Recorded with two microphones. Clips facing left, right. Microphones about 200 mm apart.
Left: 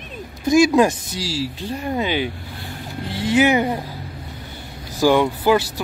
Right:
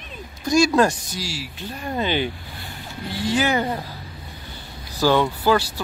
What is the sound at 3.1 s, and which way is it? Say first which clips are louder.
Speech: left 5 dB; 20° left (ahead or behind).